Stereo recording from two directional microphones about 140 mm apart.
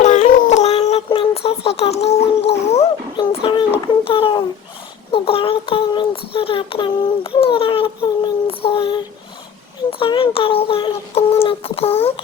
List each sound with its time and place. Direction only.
0.0 s a sound: 60° left (ahead or behind)
2.4 s music: 50° left (ahead or behind)
3.2 s a sound: 35° left (ahead or behind)
4.0 s speech: 40° left (ahead or behind)
5.1 s child singing: 40° left (ahead or behind)
10.0 s speech: 40° left (ahead or behind)